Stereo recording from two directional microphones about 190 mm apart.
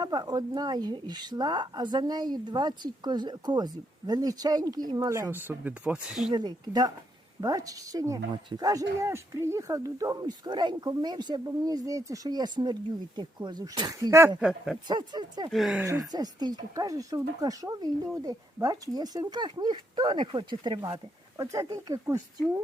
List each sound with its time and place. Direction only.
0.0 s speech: 20° right (ahead or behind); by 6.3 s 5° right (ahead or behind)
6.3 s speech: 20° right (ahead or behind)
14.8 s speech: 25° right (ahead or behind)
15.4 s speech: centre (ahead or behind)
15.9 s speech: 20° right (ahead or behind)